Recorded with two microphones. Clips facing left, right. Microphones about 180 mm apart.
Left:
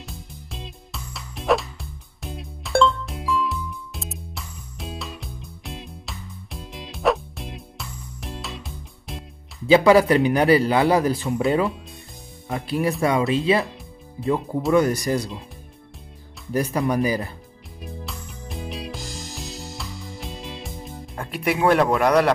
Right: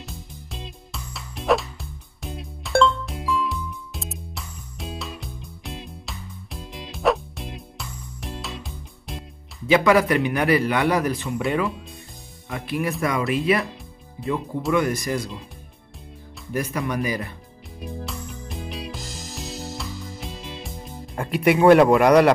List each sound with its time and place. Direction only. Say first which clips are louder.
0.0 s music: even; centre (ahead or behind)
9.7 s a man's voice: left 3 dB; 30° left (ahead or behind)
14.7 s a man's voice: left 3 dB; 35° left (ahead or behind)
16.5 s a man's voice: left 4 dB; 35° left (ahead or behind)
17.7 s music: right 3 dB; centre (ahead or behind)